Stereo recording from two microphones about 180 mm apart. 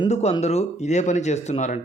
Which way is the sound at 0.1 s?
35° left (ahead or behind).